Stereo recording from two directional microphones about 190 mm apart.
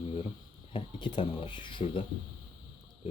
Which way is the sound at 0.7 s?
25° left (ahead or behind).